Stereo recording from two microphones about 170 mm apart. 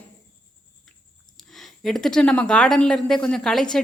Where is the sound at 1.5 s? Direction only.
Centre (ahead or behind).